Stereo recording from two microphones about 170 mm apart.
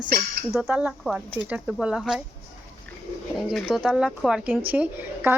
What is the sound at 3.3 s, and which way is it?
Speech, centre (ahead or behind).